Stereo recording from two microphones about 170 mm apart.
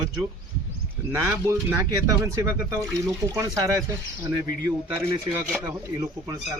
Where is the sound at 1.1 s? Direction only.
15° right (ahead or behind).